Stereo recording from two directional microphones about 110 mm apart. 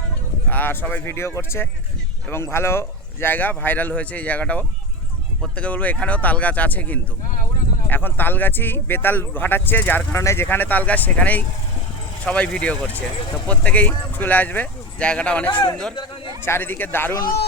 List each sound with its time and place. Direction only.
0.4 s speech: 15° left (ahead or behind)